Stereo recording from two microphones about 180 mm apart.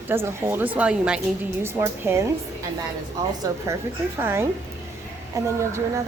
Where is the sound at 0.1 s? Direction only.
15° right (ahead or behind).